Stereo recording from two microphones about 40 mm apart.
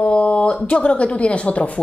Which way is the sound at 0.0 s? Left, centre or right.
Left.